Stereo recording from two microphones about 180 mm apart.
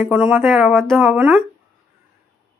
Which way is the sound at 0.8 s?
Centre (ahead or behind).